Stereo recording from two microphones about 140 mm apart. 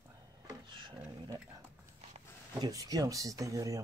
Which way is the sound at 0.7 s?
35° right (ahead or behind).